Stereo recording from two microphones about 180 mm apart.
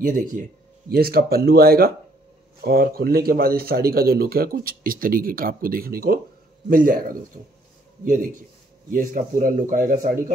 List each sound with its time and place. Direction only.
0.0 s speech: 45° right (ahead or behind)